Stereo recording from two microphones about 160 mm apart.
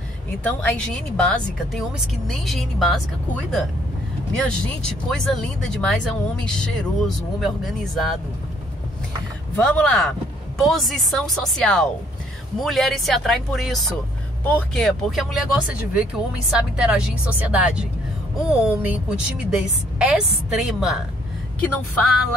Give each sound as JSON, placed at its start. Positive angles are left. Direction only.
{"t": 0.4, "sound": "speech", "side_deg": 10}
{"t": 4.4, "sound": "speech", "side_deg": 5}
{"t": 9.6, "sound": "a woman's voice", "side_deg": 5}
{"t": 22.0, "sound": "speech", "side_deg": 0}